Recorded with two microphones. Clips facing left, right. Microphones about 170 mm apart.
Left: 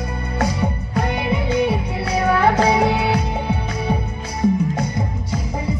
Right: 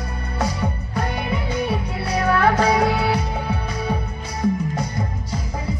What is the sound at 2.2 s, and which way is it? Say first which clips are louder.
Music: left 1 dB; 15° left (ahead or behind).